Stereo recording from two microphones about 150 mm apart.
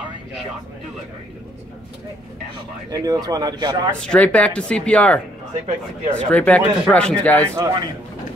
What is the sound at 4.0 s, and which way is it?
Speech, 10° left (ahead or behind).